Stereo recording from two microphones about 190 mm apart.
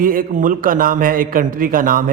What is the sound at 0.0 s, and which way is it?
A man's voice, 45° right (ahead or behind).